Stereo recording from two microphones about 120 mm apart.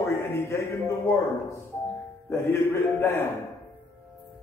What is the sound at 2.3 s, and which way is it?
Speech, 20° left (ahead or behind).